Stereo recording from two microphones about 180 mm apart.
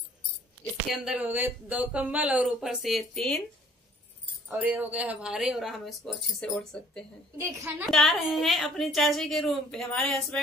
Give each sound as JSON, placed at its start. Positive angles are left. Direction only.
{"t": 0.8, "sound": "speech", "side_deg": -5}
{"t": 4.5, "sound": "speech", "side_deg": -10}
{"t": 7.3, "sound": "a woman's voice", "side_deg": -15}
{"t": 7.8, "sound": "speech", "side_deg": 0}